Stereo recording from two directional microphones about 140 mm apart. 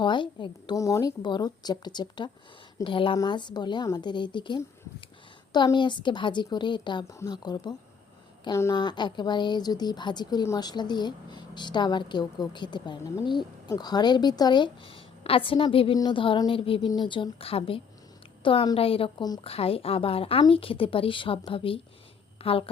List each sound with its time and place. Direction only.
0.0 s speech: 35° left (ahead or behind)
0.8 s a woman's voice: 25° left (ahead or behind); by 22.7 s 40° left (ahead or behind)